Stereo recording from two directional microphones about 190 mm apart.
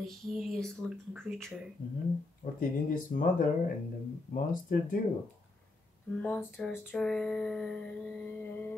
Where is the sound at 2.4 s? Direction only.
40° left (ahead or behind).